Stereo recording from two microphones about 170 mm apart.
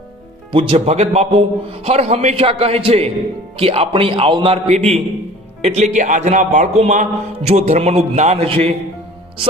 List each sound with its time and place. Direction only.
0.5 s a man's voice: 30° right (ahead or behind)